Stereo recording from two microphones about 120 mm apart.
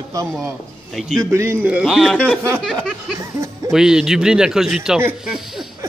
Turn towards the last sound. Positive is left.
turn(degrees=0)  # may be behind; listen again after turning